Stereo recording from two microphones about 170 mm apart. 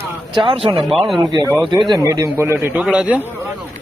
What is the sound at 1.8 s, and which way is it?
A man's voice, 20° right (ahead or behind).